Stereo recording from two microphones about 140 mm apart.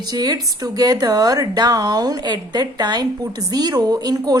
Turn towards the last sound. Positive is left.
turn(degrees=-25)  # may be behind; listen again after turning